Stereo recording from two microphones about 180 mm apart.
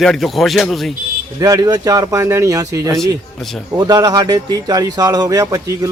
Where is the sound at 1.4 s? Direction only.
20° right (ahead or behind).